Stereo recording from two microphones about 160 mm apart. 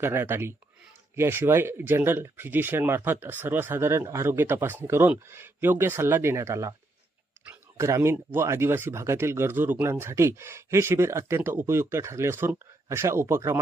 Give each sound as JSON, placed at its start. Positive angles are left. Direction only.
{"t": 0.0, "sound": "speech", "side_deg": -15}